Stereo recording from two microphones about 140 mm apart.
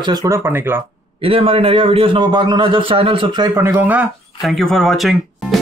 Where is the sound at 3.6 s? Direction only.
15° right (ahead or behind).